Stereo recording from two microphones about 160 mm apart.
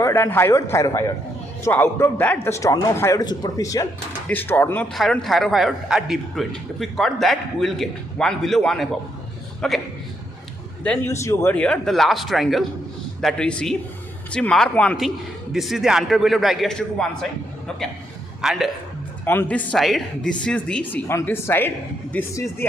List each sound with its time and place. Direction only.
0.0 s speech: 15° left (ahead or behind)
4.9 s a man's voice: centre (ahead or behind)
10.8 s a man's voice: 10° left (ahead or behind)
18.4 s a man's voice: 5° right (ahead or behind)
19.2 s speech: 10° left (ahead or behind)